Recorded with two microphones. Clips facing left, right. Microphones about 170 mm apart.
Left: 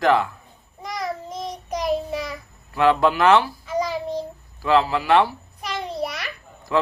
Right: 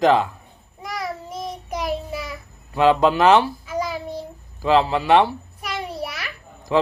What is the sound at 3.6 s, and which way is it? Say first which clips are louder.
Child singing: left 1 dB; 10° right (ahead or behind).